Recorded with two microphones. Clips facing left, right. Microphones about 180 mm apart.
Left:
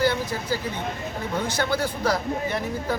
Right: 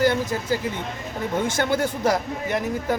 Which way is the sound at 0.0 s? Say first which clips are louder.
Right 3 dB; 45° right (ahead or behind).